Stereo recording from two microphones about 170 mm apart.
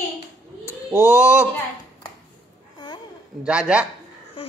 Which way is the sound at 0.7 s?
10° right (ahead or behind).